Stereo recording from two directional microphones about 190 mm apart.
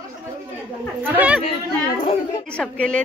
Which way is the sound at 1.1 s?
5° right (ahead or behind).